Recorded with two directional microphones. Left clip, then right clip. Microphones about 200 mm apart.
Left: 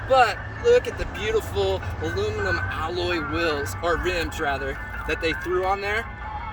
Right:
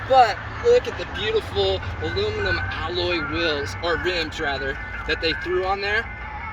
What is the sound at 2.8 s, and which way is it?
Speech, 5° right (ahead or behind).